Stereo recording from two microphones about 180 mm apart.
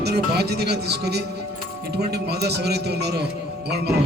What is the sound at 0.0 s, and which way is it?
A man's voice, 65° right (ahead or behind).